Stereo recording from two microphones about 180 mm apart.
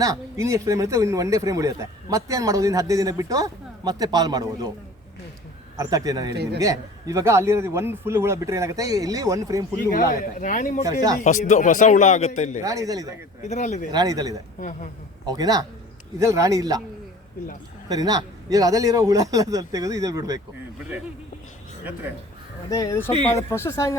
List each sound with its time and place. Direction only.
0.0 s speech: 20° right (ahead or behind)
5.7 s speech: 20° right (ahead or behind)
6.3 s a man's voice: 65° right (ahead or behind)
6.6 s a man's voice: 20° right (ahead or behind)
9.9 s speech: 50° left (ahead or behind)
12.6 s speech: 20° right (ahead or behind)
13.5 s speech: 40° left (ahead or behind)
13.9 s speech: 20° right (ahead or behind)
14.6 s speech: 45° left (ahead or behind)
15.3 s speech: 20° right (ahead or behind)
17.8 s speech: 20° right (ahead or behind)
22.7 s speech: 15° left (ahead or behind)